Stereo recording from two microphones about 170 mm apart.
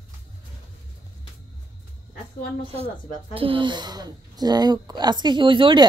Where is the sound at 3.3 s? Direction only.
30° right (ahead or behind).